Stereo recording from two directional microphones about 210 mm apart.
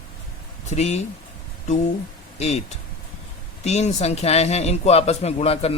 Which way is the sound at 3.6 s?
30° left (ahead or behind).